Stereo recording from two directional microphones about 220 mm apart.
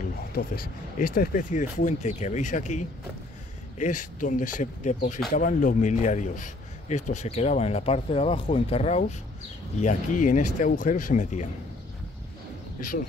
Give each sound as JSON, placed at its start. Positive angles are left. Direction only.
{"t": 0.3, "sound": "a man's voice", "side_deg": 40}